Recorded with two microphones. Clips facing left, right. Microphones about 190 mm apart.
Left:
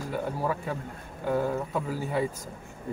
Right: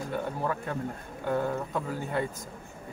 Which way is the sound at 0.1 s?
5° left (ahead or behind).